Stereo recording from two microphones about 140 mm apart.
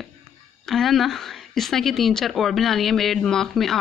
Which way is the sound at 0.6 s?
Centre (ahead or behind).